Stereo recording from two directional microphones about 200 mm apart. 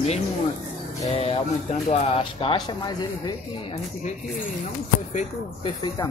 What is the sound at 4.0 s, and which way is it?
Speech, 40° left (ahead or behind).